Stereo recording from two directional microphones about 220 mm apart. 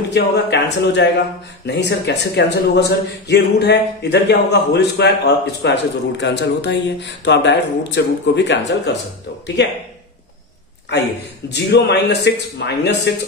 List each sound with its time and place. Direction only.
0.1 s a man's voice: 50° left (ahead or behind)
11.5 s a man's voice: 50° left (ahead or behind)